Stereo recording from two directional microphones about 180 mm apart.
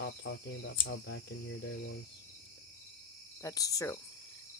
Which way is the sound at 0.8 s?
75° left (ahead or behind).